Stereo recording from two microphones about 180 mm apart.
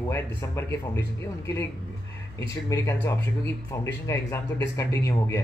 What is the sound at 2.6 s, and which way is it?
Speech, 15° left (ahead or behind).